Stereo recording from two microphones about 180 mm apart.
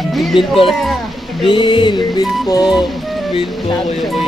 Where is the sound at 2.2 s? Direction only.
Centre (ahead or behind).